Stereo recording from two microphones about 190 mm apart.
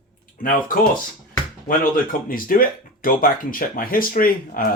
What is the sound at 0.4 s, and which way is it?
Speech, 45° left (ahead or behind).